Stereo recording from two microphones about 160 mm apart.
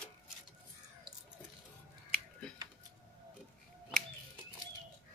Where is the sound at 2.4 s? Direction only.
5° left (ahead or behind).